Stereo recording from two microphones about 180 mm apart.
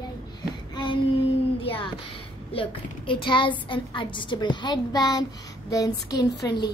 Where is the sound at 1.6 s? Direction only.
30° left (ahead or behind).